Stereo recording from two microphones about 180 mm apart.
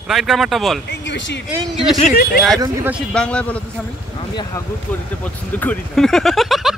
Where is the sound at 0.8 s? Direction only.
85° left.